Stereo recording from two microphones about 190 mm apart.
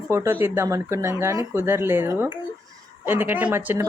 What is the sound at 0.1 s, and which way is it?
Speech, 15° right (ahead or behind).